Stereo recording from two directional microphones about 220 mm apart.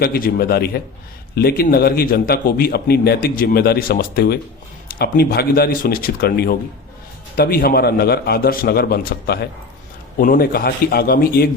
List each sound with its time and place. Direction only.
0.0 s a man's voice: 45° left (ahead or behind)